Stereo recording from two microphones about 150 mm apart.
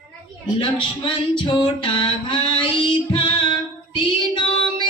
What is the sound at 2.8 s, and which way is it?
Female singing, 30° left (ahead or behind).